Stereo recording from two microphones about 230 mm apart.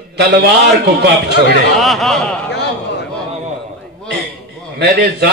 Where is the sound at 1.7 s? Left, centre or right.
Centre.